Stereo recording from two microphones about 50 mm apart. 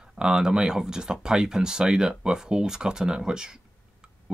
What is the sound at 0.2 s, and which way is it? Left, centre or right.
Speech, centre.